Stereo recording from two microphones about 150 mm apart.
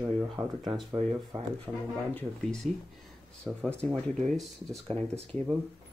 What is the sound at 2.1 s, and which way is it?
Speech, 10° left (ahead or behind).